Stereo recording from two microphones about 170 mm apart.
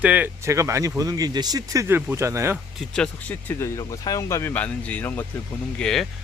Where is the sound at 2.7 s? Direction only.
5° left (ahead or behind).